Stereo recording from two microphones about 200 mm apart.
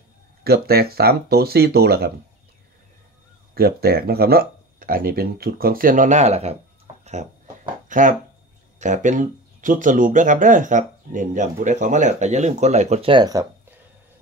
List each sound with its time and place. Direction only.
0.4 s speech: 50° right (ahead or behind)
3.5 s speech: 50° right (ahead or behind); by 6.6 s 30° right (ahead or behind)
7.9 s speech: 40° right (ahead or behind); by 13.7 s 15° right (ahead or behind)